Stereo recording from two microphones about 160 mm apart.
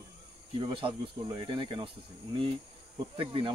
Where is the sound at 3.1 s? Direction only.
35° right (ahead or behind).